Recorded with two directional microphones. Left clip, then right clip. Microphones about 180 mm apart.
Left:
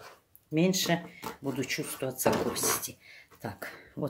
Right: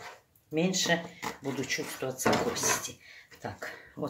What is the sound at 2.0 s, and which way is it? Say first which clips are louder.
Speech: even; 60° left (ahead or behind).